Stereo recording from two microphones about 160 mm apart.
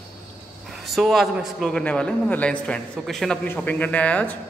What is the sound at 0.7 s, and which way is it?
A man's voice, centre (ahead or behind).